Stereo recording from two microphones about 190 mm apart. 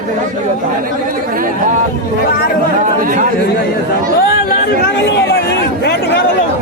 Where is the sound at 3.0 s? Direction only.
45° right (ahead or behind).